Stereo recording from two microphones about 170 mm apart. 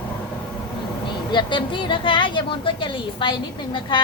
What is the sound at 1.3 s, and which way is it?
Speech, 25° left (ahead or behind).